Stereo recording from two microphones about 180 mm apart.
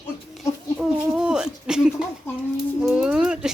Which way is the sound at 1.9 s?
15° left (ahead or behind).